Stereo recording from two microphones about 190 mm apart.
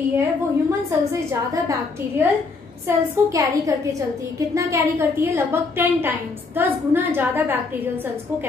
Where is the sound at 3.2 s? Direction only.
15° right (ahead or behind).